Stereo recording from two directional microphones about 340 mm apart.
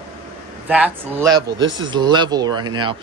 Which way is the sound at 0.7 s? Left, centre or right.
Centre.